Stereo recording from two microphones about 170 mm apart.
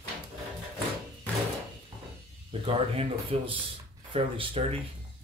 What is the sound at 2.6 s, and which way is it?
Speech, 35° right (ahead or behind).